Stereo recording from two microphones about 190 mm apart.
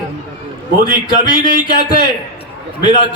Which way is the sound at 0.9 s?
45° right (ahead or behind).